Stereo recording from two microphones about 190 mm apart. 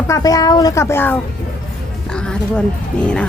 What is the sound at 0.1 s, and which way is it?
Speech, 20° left (ahead or behind).